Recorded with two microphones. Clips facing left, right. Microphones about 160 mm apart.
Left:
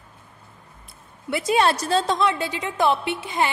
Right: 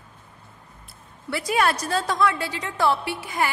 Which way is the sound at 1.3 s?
25° left (ahead or behind).